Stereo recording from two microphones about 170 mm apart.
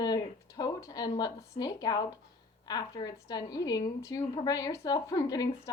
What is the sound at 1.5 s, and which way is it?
A woman's voice, 25° left (ahead or behind).